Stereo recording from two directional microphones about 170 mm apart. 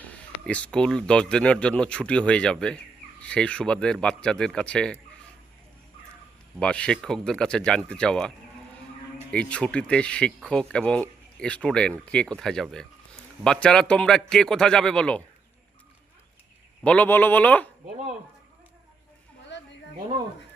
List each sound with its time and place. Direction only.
0.0 s speech: 5° left (ahead or behind)
6.6 s speech: 5° left (ahead or behind)
9.3 s speech: 5° left (ahead or behind)
16.8 s speech: 10° left (ahead or behind)
19.5 s a sound: 90° left